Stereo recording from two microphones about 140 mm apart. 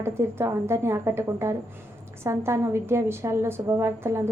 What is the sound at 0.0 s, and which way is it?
A woman's voice, 20° right (ahead or behind).